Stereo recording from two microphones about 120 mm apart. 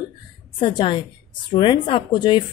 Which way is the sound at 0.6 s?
40° left (ahead or behind).